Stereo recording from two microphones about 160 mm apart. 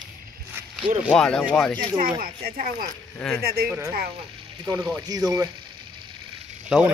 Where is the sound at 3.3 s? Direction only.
75° right (ahead or behind).